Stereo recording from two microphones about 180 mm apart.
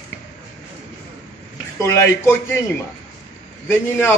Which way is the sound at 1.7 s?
15° left (ahead or behind).